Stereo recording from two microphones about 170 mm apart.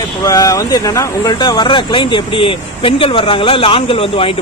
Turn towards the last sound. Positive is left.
turn(degrees=35)  # may be behind; listen again after turning